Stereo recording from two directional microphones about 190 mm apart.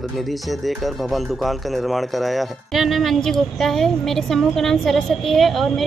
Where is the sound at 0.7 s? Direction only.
Centre (ahead or behind).